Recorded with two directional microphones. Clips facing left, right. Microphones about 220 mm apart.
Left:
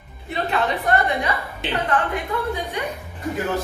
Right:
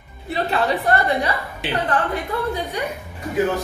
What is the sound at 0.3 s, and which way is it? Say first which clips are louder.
A woman's voice: right 2 dB; 35° right (ahead or behind).